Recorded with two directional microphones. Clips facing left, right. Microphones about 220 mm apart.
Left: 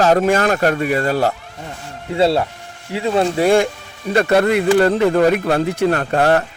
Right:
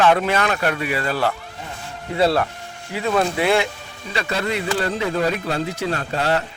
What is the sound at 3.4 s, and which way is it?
Speech, 45° left (ahead or behind).